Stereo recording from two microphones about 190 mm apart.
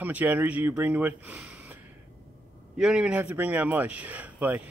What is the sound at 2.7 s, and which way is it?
Speech, 5° right (ahead or behind).